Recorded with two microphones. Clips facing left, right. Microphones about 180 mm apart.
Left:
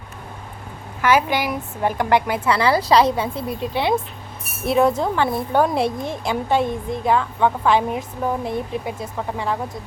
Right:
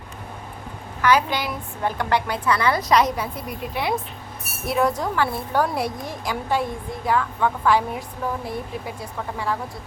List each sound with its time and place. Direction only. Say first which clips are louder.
1.4 s speech: left 4 dB; 15° left (ahead or behind)
2.4 s speech: left 3 dB; 30° left (ahead or behind)